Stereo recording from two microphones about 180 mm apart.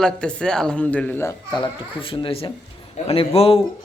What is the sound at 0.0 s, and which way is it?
A man's voice, 5° left (ahead or behind).